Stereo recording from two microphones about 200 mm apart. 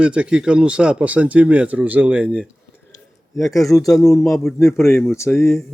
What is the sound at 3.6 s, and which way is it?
Speech, 15° left (ahead or behind).